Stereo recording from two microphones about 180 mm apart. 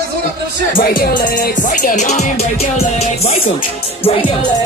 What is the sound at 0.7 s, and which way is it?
Music, 50° left (ahead or behind).